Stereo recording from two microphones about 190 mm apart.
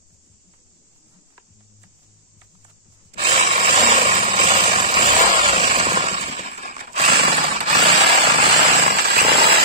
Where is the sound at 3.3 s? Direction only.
45° right (ahead or behind).